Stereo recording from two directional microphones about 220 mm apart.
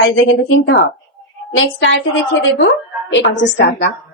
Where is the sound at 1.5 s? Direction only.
60° left (ahead or behind).